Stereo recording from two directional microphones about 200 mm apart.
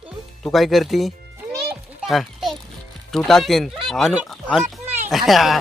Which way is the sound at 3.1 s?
Centre (ahead or behind).